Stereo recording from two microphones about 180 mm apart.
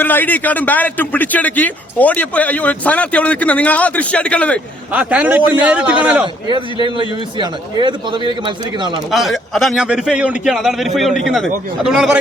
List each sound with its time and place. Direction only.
0.0 s a man's voice: 10° left (ahead or behind)
4.9 s a man's voice: 10° right (ahead or behind)
6.8 s a man's voice: 25° right (ahead or behind)
9.1 s a man's voice: centre (ahead or behind)